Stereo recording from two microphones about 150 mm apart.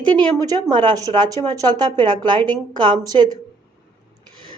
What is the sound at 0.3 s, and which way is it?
Speech, 25° right (ahead or behind).